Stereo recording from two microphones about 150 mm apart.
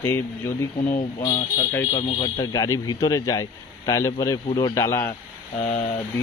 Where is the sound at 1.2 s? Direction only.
35° left (ahead or behind).